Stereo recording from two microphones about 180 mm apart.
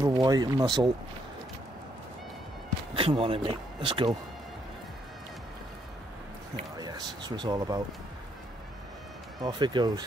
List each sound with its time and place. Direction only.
0.0 s speech: 20° right (ahead or behind)
2.9 s speech: 30° right (ahead or behind)
6.8 s speech: 20° right (ahead or behind)
9.4 s speech: 25° right (ahead or behind)